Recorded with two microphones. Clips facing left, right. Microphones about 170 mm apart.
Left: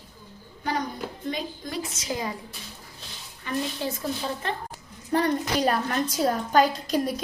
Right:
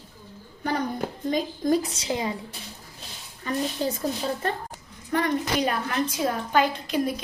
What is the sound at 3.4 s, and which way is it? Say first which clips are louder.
Speech: right 1 dB; 40° right (ahead or behind).